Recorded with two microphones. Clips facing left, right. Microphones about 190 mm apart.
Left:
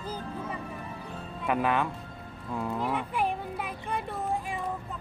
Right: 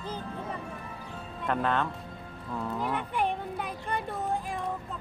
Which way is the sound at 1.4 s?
10° left (ahead or behind).